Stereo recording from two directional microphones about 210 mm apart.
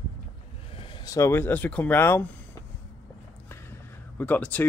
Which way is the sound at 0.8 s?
20° left (ahead or behind).